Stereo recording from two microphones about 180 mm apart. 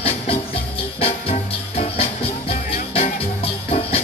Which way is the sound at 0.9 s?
35° left (ahead or behind).